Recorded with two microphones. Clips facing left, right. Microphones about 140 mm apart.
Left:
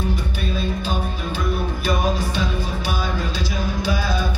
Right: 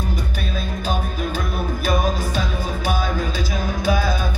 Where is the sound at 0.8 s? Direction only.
45° right (ahead or behind).